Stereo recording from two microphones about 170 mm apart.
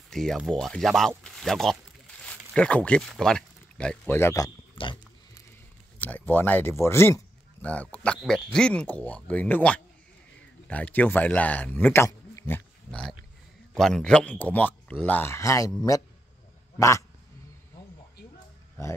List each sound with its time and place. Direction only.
0.1 s speech: centre (ahead or behind)
4.8 s pig: 35° left (ahead or behind)
5.9 s speech: 10° left (ahead or behind)
16.7 s speech: 15° left (ahead or behind)